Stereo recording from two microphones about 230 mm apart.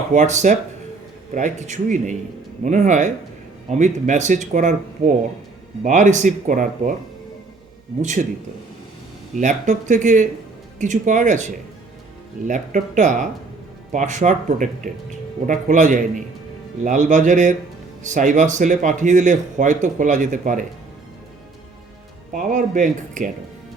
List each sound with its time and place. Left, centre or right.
0.1 s speech: right
5.8 s speech: right
8.0 s speech: right
9.4 s speech: right
22.3 s speech: right